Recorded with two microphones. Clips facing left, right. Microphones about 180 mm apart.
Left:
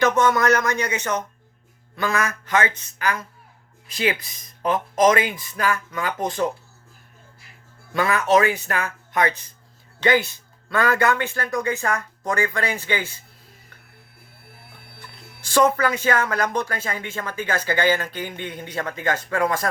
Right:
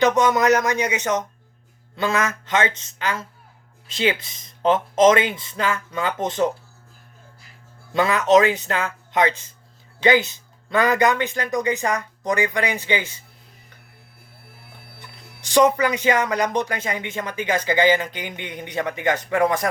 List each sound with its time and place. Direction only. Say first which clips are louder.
0.0 s speech: right 1 dB; 15° right (ahead or behind)
7.9 s speech: right 2 dB; 20° right (ahead or behind)
15.4 s speech: right 2 dB; 15° right (ahead or behind)